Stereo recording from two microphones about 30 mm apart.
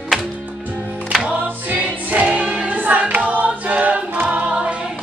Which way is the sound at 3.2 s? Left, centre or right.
Right.